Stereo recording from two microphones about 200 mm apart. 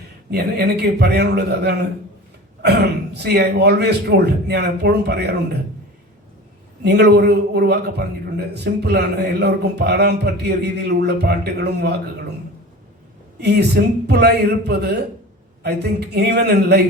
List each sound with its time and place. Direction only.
0.3 s a man's voice: 55° right (ahead or behind)
6.8 s a man's voice: 55° right (ahead or behind)
13.4 s a man's voice: 55° right (ahead or behind)